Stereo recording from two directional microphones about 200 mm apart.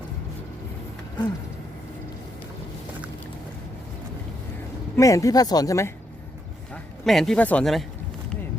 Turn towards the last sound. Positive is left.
turn(degrees=0)  # may be behind; listen again after turning